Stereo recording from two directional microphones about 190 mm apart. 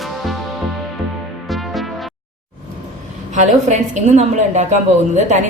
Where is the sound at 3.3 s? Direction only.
40° right (ahead or behind).